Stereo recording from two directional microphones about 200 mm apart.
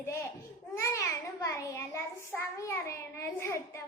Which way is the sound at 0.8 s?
15° left (ahead or behind).